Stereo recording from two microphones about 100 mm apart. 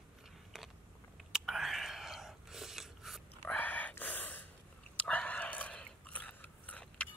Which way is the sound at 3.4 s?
15° left (ahead or behind).